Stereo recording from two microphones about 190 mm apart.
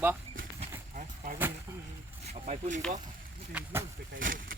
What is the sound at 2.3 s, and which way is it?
Speech, 40° right (ahead or behind).